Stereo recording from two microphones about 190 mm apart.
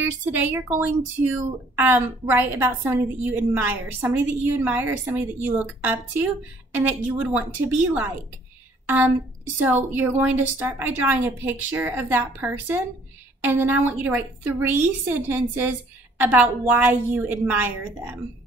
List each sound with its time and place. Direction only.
0.2 s a woman's voice: 10° right (ahead or behind)
6.7 s a woman's voice: 10° right (ahead or behind)